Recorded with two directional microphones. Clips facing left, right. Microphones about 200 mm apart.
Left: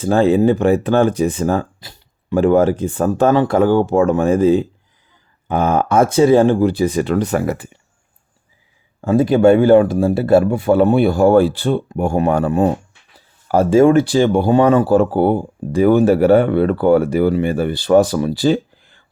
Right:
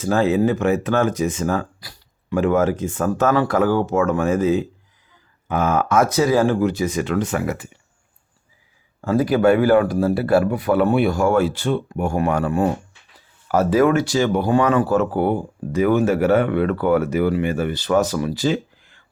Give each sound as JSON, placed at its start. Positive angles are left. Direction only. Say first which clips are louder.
{"t": 0.0, "sound": "speech", "louder": "left 5 dB", "side_deg": 30}
{"t": 9.0, "sound": "a man's voice", "louder": "left 4 dB", "side_deg": 25}